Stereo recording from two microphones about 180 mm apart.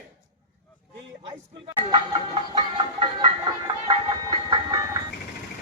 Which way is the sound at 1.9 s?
25° right (ahead or behind).